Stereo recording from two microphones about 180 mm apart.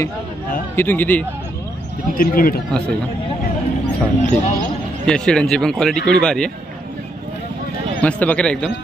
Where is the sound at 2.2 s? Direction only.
55° left (ahead or behind).